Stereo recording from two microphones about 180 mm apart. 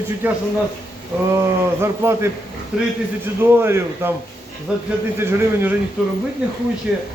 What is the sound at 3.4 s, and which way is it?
A man's voice, 15° right (ahead or behind).